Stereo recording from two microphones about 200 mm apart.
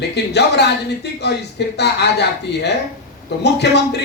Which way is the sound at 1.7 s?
55° left (ahead or behind).